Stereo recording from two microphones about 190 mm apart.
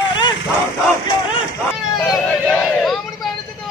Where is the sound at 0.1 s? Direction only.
25° left (ahead or behind).